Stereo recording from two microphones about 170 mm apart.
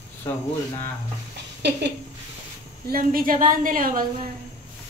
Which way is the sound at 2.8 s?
60° right (ahead or behind).